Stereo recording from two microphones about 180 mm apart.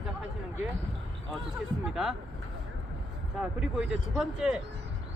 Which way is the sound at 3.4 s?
5° right (ahead or behind).